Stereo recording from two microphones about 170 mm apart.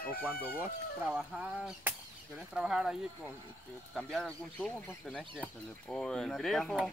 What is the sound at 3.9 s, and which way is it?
Speech, 5° left (ahead or behind).